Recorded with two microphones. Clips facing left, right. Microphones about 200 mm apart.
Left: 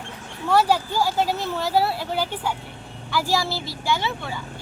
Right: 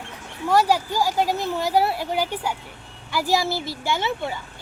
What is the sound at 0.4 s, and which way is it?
Speech, 10° right (ahead or behind).